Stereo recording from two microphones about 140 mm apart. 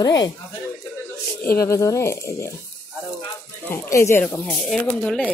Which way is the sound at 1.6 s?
20° left (ahead or behind).